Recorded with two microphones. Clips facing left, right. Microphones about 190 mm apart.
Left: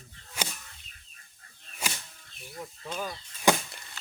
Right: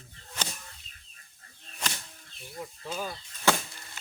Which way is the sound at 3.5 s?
15° left (ahead or behind).